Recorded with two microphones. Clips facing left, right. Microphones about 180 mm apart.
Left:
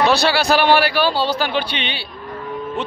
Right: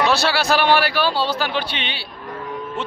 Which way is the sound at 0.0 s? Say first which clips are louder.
Left 3 dB; centre (ahead or behind).